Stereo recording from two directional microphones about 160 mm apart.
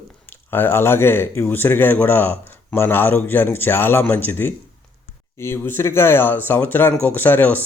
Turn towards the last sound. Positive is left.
turn(degrees=10)  # may be behind; listen again after turning